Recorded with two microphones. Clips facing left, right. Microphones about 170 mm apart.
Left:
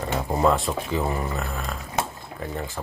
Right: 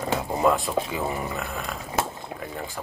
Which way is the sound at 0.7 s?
5° right (ahead or behind).